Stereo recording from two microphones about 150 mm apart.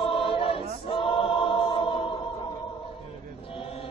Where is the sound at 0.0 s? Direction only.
35° left (ahead or behind).